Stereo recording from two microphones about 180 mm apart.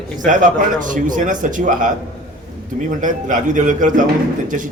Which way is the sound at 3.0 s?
45° right (ahead or behind).